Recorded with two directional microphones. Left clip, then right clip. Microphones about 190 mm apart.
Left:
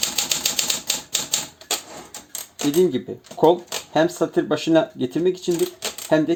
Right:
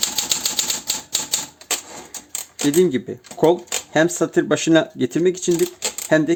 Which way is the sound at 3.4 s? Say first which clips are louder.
Even; 25° right (ahead or behind).